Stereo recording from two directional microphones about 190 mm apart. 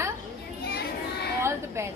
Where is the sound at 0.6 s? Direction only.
60° left (ahead or behind).